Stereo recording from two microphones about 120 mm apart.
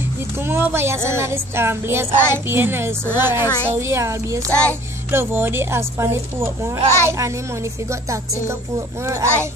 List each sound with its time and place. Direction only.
0.4 s a woman's voice: 20° right (ahead or behind)
4.5 s a child's voice: 10° left (ahead or behind)
5.1 s speech: 20° right (ahead or behind)